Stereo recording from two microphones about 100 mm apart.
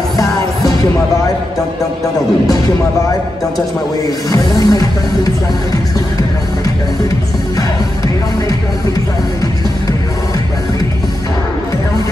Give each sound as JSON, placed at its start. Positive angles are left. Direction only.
{"t": 4.3, "sound": "music", "side_deg": 40}